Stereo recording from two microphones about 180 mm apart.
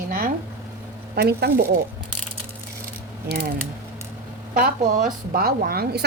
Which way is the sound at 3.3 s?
65° right (ahead or behind).